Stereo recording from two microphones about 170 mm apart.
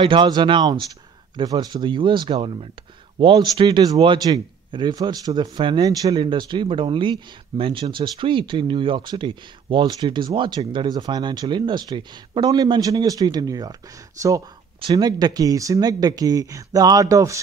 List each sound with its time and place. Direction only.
0.0 s a man's voice: 30° right (ahead or behind)
14.8 s a man's voice: 25° right (ahead or behind)